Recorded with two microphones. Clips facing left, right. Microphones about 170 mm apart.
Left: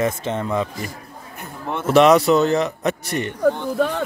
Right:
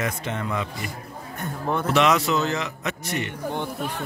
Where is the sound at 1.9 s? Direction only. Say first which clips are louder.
Left 9 dB; 40° left (ahead or behind).